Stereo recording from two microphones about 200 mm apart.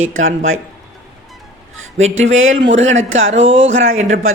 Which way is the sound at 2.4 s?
75° right (ahead or behind).